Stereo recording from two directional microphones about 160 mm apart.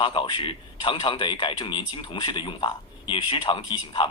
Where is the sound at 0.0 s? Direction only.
30° left (ahead or behind).